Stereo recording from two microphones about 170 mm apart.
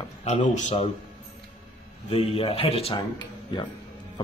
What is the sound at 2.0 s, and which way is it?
Speech, 35° left (ahead or behind).